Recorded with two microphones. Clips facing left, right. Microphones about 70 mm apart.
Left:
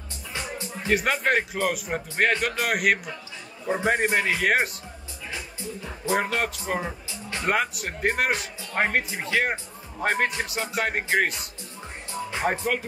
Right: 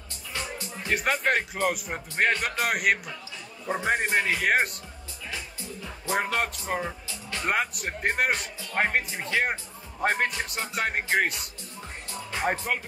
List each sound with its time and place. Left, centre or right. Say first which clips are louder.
0.8 s a man's voice: left 2 dB; centre
3.6 s a man's voice: left 3 dB; centre
6.0 s a man's voice: left 2 dB; centre
6.8 s music: left 1 dB; left
7.4 s a man's voice: left 2 dB; centre
8.3 s a man's voice: left 1 dB; centre
12.1 s music: left 2 dB; left
12.4 s a man's voice: left 2 dB; centre